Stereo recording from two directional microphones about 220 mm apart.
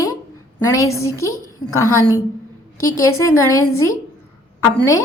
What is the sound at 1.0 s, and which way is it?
Speech, 15° left (ahead or behind).